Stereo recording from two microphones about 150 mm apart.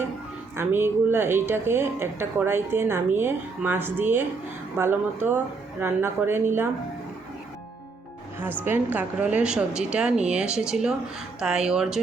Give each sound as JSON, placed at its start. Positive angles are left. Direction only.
{"t": 0.5, "sound": "a woman's voice", "side_deg": -15}
{"t": 8.4, "sound": "a woman's voice", "side_deg": -15}